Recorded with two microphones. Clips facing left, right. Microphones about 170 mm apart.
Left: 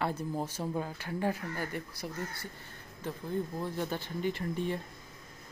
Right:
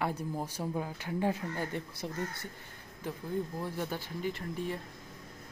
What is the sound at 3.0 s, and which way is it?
Speech, 15° right (ahead or behind).